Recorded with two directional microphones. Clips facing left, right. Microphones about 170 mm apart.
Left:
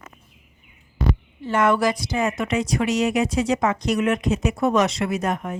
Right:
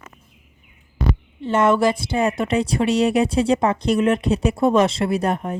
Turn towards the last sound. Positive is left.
turn(degrees=-35)  # may be behind; listen again after turning